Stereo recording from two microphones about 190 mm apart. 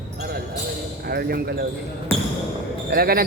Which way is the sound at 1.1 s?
55° right (ahead or behind).